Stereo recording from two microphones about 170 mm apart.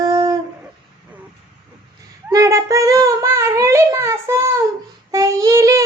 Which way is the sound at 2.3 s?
20° right (ahead or behind).